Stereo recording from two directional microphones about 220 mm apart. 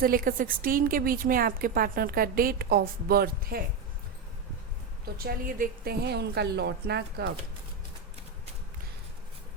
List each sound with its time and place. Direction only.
0.0 s a woman's voice: 40° right (ahead or behind)
5.2 s a woman's voice: 40° right (ahead or behind)